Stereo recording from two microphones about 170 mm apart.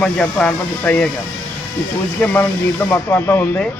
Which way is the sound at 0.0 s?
10° left (ahead or behind).